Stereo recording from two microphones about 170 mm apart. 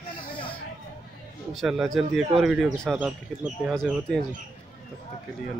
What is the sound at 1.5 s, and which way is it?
Speech, centre (ahead or behind).